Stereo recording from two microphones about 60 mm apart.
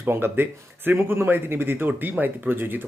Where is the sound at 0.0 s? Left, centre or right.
Right.